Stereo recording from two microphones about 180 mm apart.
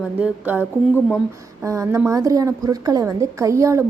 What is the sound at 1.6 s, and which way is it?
A woman's voice, 15° right (ahead or behind).